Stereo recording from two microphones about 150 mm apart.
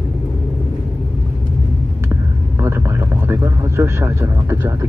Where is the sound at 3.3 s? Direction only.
15° right (ahead or behind).